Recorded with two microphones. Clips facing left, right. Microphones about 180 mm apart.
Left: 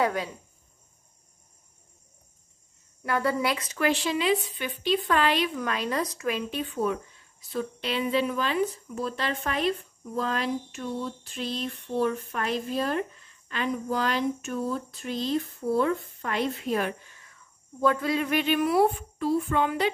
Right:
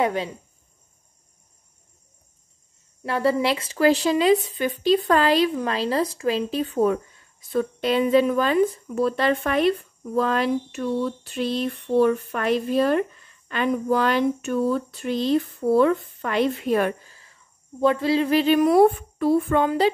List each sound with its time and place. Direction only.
0.0 s speech: 25° right (ahead or behind)
3.0 s speech: 25° right (ahead or behind); by 9.7 s 60° right (ahead or behind)
10.1 s a sound: 65° right (ahead or behind)
13.5 s speech: 60° right (ahead or behind)
17.0 s speech: 30° right (ahead or behind)
18.9 s a woman's voice: 55° right (ahead or behind)
19.6 s speech: 35° right (ahead or behind)